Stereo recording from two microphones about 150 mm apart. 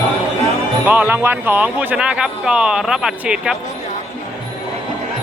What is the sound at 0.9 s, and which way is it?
Speech, 10° right (ahead or behind).